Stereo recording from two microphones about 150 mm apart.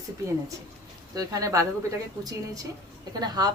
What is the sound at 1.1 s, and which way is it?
Speech, 20° right (ahead or behind).